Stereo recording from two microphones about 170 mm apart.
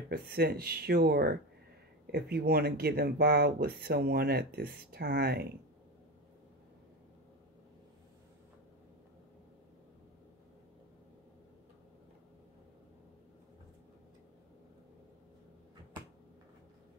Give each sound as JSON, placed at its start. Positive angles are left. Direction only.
{"t": 0.1, "sound": "speech", "side_deg": -65}